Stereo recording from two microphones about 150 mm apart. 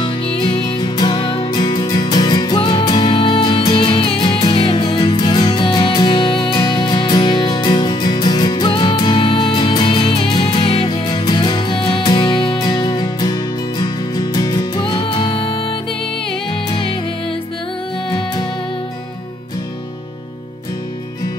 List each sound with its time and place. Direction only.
0.0 s music: 30° left (ahead or behind)
18.1 s music: 30° left (ahead or behind)